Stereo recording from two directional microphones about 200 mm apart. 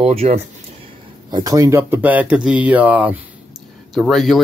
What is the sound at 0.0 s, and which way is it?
Speech, 30° right (ahead or behind).